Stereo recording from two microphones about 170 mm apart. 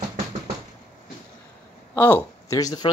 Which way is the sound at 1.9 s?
10° left (ahead or behind).